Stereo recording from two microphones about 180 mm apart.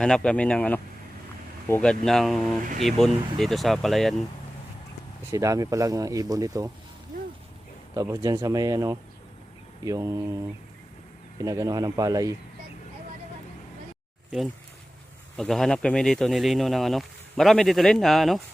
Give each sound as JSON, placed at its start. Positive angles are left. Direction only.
{"t": 0.0, "sound": "speech", "side_deg": 5}
{"t": 5.3, "sound": "speech", "side_deg": -20}
{"t": 7.9, "sound": "speech", "side_deg": -15}
{"t": 15.4, "sound": "speech", "side_deg": 0}